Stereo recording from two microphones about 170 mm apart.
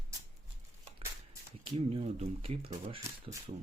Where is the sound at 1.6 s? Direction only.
35° right (ahead or behind).